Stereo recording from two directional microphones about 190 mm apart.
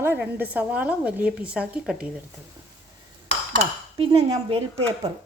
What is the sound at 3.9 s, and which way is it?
Speech, 30° right (ahead or behind).